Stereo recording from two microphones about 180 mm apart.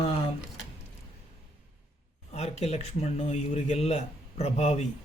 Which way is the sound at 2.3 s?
35° left (ahead or behind).